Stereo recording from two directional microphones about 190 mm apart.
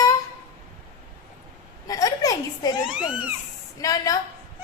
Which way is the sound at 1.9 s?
20° left (ahead or behind).